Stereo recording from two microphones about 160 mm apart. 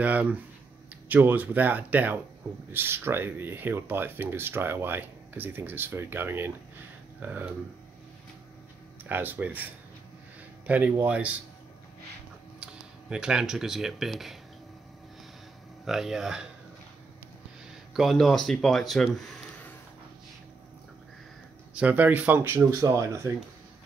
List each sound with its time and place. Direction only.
0.0 s speech: 10° right (ahead or behind)
9.1 s speech: 10° right (ahead or behind)
10.7 s speech: 10° right (ahead or behind)
13.1 s speech: 5° right (ahead or behind)
15.8 s speech: centre (ahead or behind)
17.9 s speech: centre (ahead or behind)
21.7 s speech: 10° right (ahead or behind)